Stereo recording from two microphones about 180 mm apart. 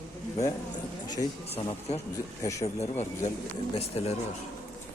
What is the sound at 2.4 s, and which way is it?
Speech, 15° left (ahead or behind).